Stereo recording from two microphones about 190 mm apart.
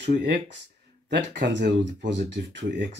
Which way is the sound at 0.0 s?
60° right (ahead or behind).